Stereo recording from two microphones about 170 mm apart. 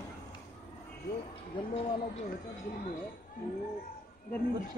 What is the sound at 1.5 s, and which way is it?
Speech, 30° left (ahead or behind).